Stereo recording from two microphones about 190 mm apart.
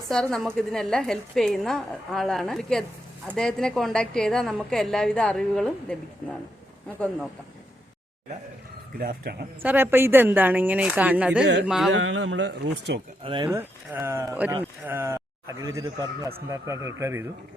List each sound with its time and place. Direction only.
0.1 s a woman's voice: 5° left (ahead or behind)
9.0 s a man's voice: 50° right (ahead or behind)
9.6 s a woman's voice: 10° right (ahead or behind)
11.9 s speech: 80° right; by 13.0 s 60° right (ahead or behind)
13.2 s a woman's voice: 20° right (ahead or behind)